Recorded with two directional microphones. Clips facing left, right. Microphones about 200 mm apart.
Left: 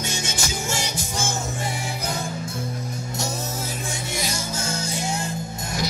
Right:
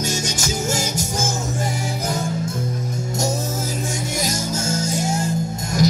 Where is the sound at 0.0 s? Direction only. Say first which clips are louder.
Right 5 dB; 40° right (ahead or behind).